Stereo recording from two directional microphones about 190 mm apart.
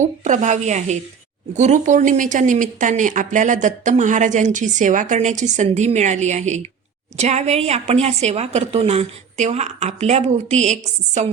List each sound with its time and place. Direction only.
0.0 s speech: 40° right (ahead or behind)